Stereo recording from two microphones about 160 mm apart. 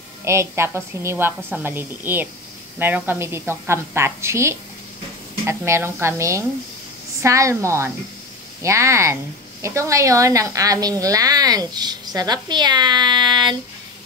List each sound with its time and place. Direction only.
0.2 s a woman's voice: 15° right (ahead or behind)